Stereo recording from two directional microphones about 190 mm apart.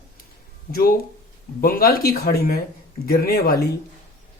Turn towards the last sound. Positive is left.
turn(degrees=55)  # may be behind; listen again after turning